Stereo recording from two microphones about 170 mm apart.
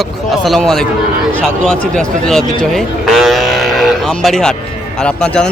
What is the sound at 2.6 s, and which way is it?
Cattle, centre (ahead or behind).